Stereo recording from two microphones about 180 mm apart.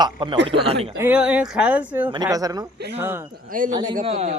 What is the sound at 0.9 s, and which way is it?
Speech, 10° right (ahead or behind).